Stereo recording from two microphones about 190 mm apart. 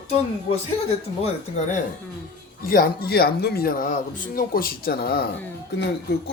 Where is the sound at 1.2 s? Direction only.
35° left (ahead or behind).